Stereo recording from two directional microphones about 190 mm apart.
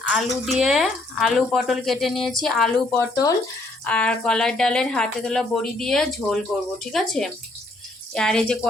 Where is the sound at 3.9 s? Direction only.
5° left (ahead or behind).